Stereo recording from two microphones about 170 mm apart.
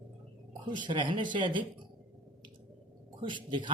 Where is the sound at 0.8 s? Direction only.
30° right (ahead or behind).